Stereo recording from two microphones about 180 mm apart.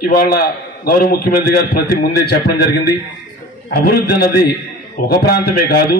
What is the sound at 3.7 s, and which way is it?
A man's voice, 60° left (ahead or behind).